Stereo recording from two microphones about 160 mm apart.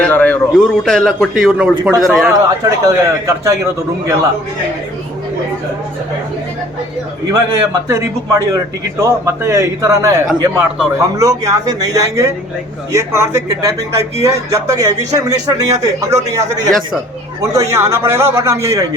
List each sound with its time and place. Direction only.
0.0 s a man's voice: 10° left (ahead or behind)
2.3 s speech: 20° right (ahead or behind)
7.3 s a man's voice: 20° right (ahead or behind)